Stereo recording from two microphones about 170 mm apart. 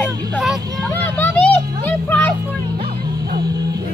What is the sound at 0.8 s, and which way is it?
Music, 10° left (ahead or behind).